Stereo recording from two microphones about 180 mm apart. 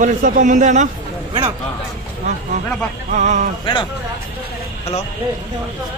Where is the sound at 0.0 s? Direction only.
45° right (ahead or behind).